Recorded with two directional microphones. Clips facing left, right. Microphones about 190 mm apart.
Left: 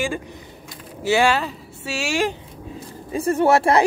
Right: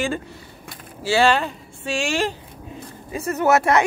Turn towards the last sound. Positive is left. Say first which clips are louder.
# left 1 dB
turn(degrees=30)  # may be behind; listen again after turning